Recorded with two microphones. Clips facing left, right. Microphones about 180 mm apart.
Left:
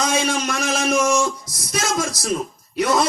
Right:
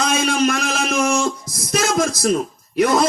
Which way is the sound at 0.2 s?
55° right (ahead or behind).